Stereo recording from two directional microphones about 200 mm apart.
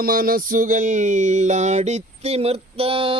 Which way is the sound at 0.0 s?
45° right (ahead or behind).